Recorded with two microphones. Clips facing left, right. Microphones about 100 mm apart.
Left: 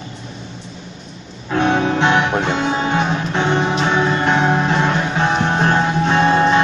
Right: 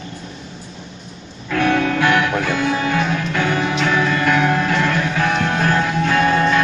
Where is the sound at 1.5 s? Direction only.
25° left (ahead or behind).